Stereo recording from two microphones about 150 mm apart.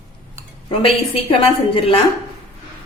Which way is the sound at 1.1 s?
40° left (ahead or behind).